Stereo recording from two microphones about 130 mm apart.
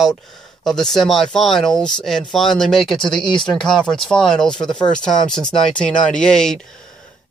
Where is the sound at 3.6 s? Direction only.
5° left (ahead or behind).